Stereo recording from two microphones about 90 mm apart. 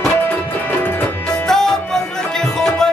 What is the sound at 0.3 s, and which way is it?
Music, 20° left (ahead or behind).